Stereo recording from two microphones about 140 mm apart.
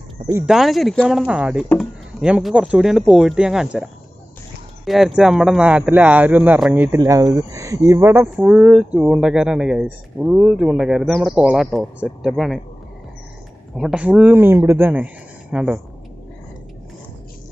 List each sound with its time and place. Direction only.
0.5 s speech: centre (ahead or behind)
13.7 s speech: 5° right (ahead or behind)